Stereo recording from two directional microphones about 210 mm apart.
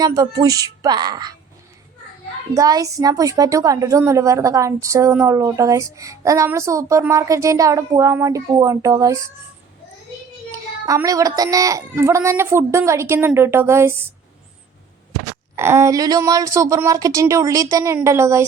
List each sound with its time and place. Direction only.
0.0 s a woman's voice: 15° right (ahead or behind)
2.6 s a woman's voice: 15° right (ahead or behind)
10.8 s a woman's voice: 15° right (ahead or behind)
15.5 s a woman's voice: 10° right (ahead or behind)